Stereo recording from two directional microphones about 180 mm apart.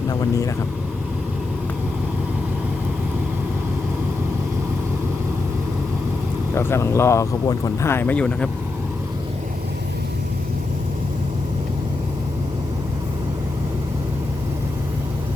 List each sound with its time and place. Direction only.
0.1 s speech: 20° left (ahead or behind)
6.5 s speech: 15° left (ahead or behind)